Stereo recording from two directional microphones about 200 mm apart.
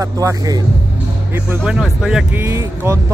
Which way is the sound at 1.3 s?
5° right (ahead or behind).